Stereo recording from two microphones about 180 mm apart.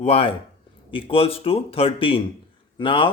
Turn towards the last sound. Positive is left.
turn(degrees=30)  # may be behind; listen again after turning